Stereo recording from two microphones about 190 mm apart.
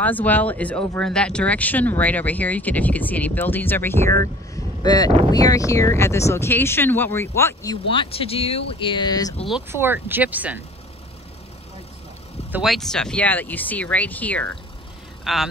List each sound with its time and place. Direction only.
0.0 s speech: 10° left (ahead or behind)
9.7 s speech: 10° right (ahead or behind)
12.4 s speech: 5° right (ahead or behind)